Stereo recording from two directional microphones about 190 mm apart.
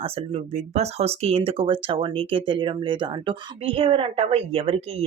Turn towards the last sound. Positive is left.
turn(degrees=-30)  # may be behind; listen again after turning